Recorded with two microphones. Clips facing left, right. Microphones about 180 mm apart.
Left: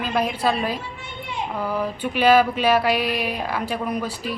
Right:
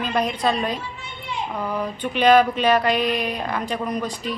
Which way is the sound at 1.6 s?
5° left (ahead or behind).